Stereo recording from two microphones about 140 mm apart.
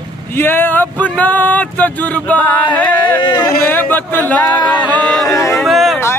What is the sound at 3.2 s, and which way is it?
Speech, 35° left (ahead or behind).